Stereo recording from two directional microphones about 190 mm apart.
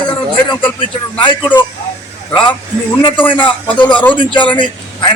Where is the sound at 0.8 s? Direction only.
25° left (ahead or behind).